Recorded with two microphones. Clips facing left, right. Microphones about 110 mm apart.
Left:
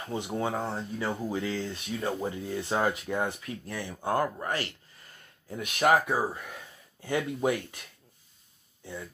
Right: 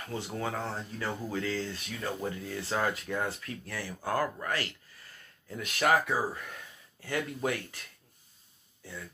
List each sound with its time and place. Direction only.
0.0 s speech: 20° left (ahead or behind)